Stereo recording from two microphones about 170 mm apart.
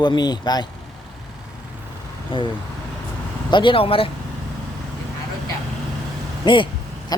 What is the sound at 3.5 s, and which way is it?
Speech, 30° left (ahead or behind).